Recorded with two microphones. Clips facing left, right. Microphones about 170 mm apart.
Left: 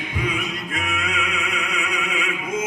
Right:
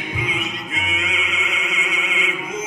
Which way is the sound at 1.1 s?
55° left (ahead or behind).